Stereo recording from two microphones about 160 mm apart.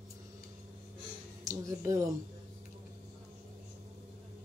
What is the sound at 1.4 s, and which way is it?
Speech, 20° right (ahead or behind).